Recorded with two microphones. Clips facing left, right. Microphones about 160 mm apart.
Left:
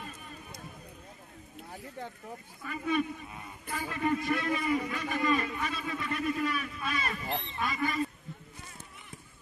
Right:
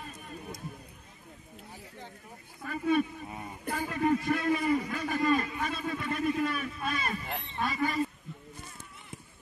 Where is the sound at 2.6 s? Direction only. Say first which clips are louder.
Right 3 dB; 40° right (ahead or behind).